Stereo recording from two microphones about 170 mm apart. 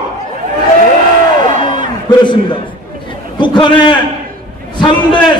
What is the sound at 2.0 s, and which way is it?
A man's voice, 25° left (ahead or behind).